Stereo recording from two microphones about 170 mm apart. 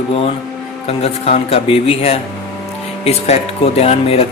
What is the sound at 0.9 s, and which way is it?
Speech, 35° left (ahead or behind).